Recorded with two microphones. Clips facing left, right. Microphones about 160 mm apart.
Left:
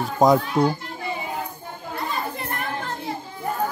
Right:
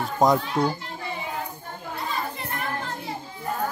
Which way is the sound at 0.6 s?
15° left (ahead or behind).